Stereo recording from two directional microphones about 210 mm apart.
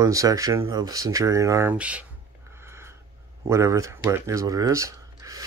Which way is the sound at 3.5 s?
15° right (ahead or behind).